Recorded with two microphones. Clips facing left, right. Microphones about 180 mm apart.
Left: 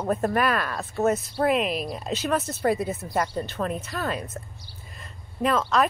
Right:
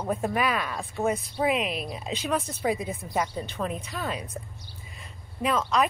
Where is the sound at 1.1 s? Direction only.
5° left (ahead or behind).